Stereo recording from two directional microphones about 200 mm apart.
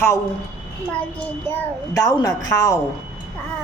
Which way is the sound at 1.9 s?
15° left (ahead or behind).